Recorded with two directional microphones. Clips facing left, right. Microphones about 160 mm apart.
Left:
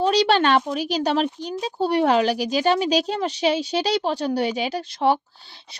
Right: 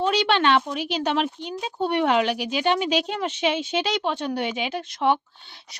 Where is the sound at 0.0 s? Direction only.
40° left (ahead or behind).